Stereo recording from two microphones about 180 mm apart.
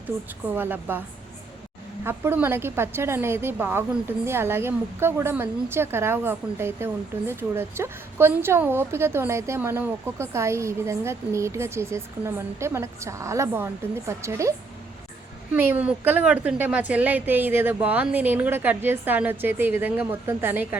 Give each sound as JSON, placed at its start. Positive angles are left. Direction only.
{"t": 0.5, "sound": "a woman's voice", "side_deg": -10}
{"t": 2.0, "sound": "a woman's voice", "side_deg": -10}
{"t": 15.5, "sound": "a woman's voice", "side_deg": -10}